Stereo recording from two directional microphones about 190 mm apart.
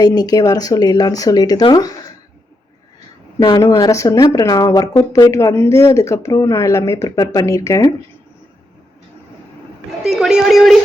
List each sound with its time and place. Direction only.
0.0 s speech: 20° left (ahead or behind)
3.6 s speech: 15° left (ahead or behind)
10.1 s speech: 5° right (ahead or behind)